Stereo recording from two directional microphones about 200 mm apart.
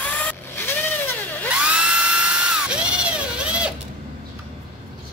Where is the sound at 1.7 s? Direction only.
5° right (ahead or behind).